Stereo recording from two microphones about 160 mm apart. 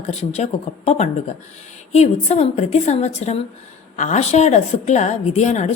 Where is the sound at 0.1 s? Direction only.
40° left (ahead or behind).